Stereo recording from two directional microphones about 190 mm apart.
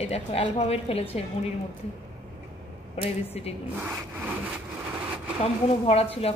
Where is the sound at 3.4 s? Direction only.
35° left (ahead or behind).